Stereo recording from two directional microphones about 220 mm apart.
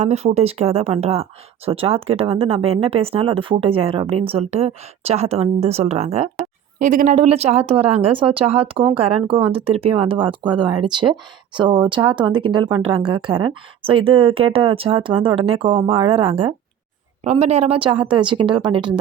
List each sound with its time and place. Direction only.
0.0 s speech: 30° right (ahead or behind)